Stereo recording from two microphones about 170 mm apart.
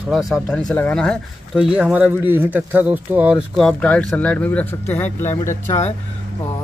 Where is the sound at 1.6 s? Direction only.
5° right (ahead or behind); by 5.5 s 15° left (ahead or behind).